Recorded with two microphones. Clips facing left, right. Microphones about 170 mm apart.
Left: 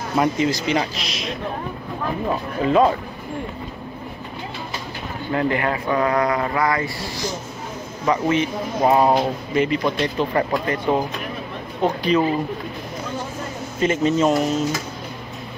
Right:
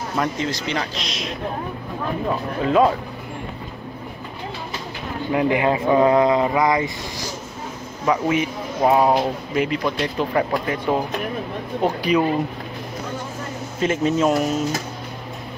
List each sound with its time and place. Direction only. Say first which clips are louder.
0.2 s a man's voice: left 5 dB; 10° left (ahead or behind)
2.6 s speech: even; centre (ahead or behind)
5.3 s speech: right 2 dB; 15° right (ahead or behind)
8.0 s speech: even; 5° right (ahead or behind)
13.7 s speech: left 1 dB; centre (ahead or behind)